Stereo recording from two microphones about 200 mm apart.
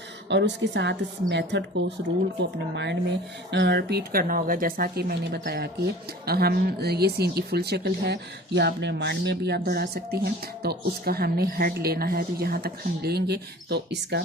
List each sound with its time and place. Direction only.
0.3 s a woman's voice: 60° right (ahead or behind)